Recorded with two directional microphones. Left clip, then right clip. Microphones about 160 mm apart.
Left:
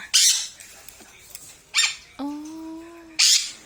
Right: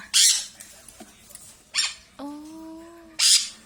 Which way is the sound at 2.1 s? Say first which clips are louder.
Left 5 dB; 5° left (ahead or behind).